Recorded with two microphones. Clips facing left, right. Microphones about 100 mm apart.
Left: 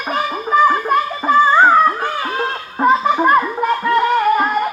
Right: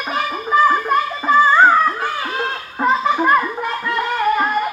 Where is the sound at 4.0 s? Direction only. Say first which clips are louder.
Left 2 dB; 15° left (ahead or behind).